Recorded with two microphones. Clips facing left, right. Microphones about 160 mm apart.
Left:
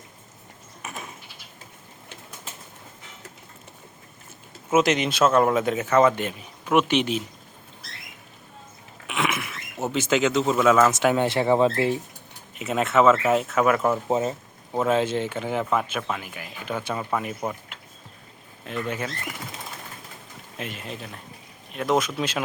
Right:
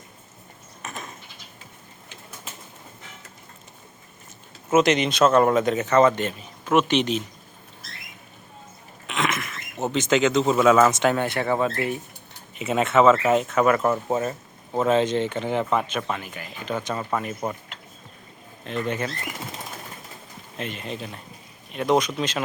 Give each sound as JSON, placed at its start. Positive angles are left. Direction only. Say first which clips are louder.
{"t": 0.8, "sound": "goat", "louder": "right 1 dB", "side_deg": 10}
{"t": 4.7, "sound": "a man's voice", "louder": "right 2 dB", "side_deg": 5}
{"t": 9.0, "sound": "a sound", "louder": "even", "side_deg": 10}
{"t": 11.2, "sound": "speech", "louder": "left 3 dB", "side_deg": 20}
{"t": 12.5, "sound": "speech", "louder": "right 1 dB", "side_deg": 0}
{"t": 14.1, "sound": "speech", "louder": "left 1 dB", "side_deg": 20}
{"t": 14.7, "sound": "a man's voice", "louder": "right 2 dB", "side_deg": 5}
{"t": 18.6, "sound": "a man's voice", "louder": "right 2 dB", "side_deg": 10}
{"t": 20.6, "sound": "speech", "louder": "right 3 dB", "side_deg": 5}